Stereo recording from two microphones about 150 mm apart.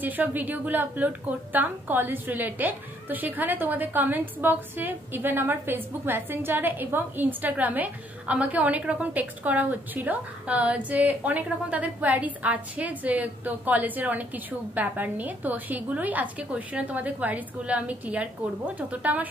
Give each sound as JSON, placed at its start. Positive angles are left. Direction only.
{"t": 0.0, "sound": "a woman's voice", "side_deg": -10}